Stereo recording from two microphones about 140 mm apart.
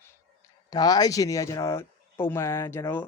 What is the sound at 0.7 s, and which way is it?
Speech, 30° left (ahead or behind).